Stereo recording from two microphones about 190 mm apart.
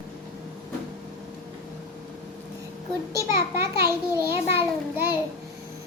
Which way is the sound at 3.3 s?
55° right (ahead or behind).